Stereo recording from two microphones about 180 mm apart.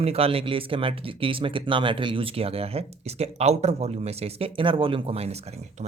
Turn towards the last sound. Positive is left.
turn(degrees=-35)  # may be behind; listen again after turning